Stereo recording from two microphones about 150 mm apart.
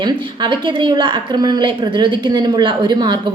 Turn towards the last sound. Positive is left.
turn(degrees=-30)  # may be behind; listen again after turning